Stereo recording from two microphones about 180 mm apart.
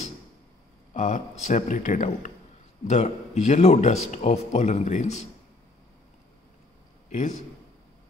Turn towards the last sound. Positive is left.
turn(degrees=40)  # may be behind; listen again after turning